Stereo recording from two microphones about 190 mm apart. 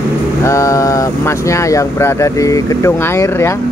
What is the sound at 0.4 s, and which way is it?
Speech, 15° left (ahead or behind).